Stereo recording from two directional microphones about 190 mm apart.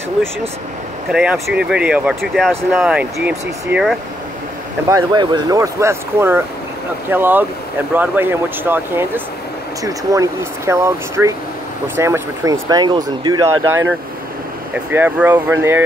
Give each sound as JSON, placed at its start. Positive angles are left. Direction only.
{"t": 1.1, "sound": "speech", "side_deg": -5}
{"t": 4.8, "sound": "speech", "side_deg": -20}
{"t": 14.7, "sound": "speech", "side_deg": -10}